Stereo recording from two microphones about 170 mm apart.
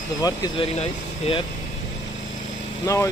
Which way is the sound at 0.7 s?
35° left (ahead or behind).